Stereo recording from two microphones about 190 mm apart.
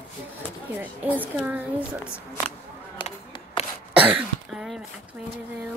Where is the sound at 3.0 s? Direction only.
30° left (ahead or behind).